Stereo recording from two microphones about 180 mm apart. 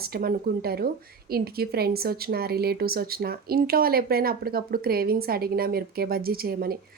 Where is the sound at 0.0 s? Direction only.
60° right (ahead or behind).